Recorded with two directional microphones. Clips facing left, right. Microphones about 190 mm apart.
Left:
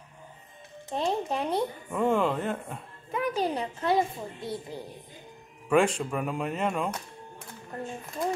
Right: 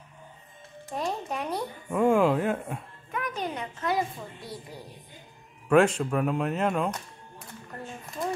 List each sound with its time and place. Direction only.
0.8 s a woman's voice: 25° left (ahead or behind)
1.9 s speech: 10° right (ahead or behind)
3.1 s a woman's voice: 30° left (ahead or behind)
5.7 s speech: centre (ahead or behind)